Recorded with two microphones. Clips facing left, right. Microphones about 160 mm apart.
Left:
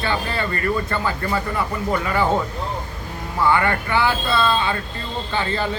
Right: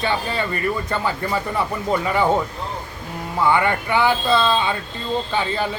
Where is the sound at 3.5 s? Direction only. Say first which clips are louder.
Right 1 dB; 15° right (ahead or behind).